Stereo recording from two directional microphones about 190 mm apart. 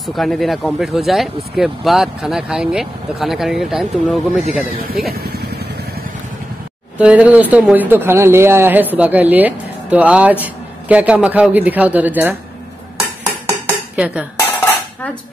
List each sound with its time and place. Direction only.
0.0 s speech: centre (ahead or behind)
4.7 s speech: 50° right (ahead or behind)
5.1 s vehicle: 55° right (ahead or behind)
7.0 s speech: 5° right (ahead or behind)
13.5 s dishes: 5° right (ahead or behind)